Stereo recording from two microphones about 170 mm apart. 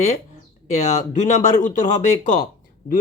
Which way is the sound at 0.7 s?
40° left (ahead or behind).